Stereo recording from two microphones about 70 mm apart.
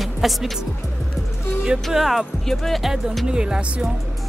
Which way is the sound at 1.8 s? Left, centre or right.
Centre.